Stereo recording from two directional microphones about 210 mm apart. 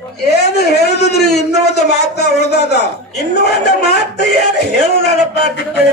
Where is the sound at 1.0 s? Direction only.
50° left (ahead or behind).